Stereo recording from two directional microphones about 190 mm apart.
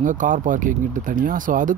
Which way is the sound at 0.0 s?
45° right (ahead or behind).